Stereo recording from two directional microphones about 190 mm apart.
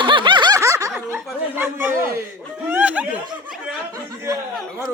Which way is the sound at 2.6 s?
10° right (ahead or behind).